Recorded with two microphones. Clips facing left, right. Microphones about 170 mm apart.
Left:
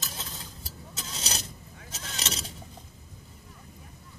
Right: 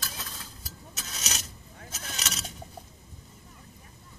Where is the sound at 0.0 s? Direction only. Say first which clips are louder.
Left 1 dB; 25° left (ahead or behind).